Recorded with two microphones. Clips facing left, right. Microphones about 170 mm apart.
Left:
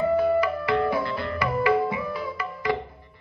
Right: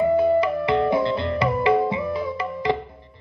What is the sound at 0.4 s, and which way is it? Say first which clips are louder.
Music: right 3 dB; 20° right (ahead or behind).